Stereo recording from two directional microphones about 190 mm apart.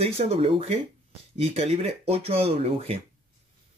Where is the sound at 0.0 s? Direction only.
35° right (ahead or behind).